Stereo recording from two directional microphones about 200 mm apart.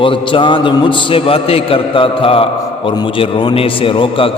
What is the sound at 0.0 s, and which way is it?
A man's voice, 25° left (ahead or behind).